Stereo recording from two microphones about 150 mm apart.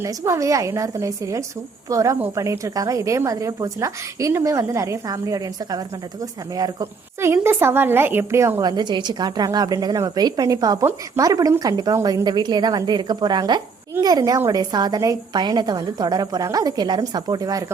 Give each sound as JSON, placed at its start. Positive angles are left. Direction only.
{"t": 0.0, "sound": "a woman's voice", "side_deg": -20}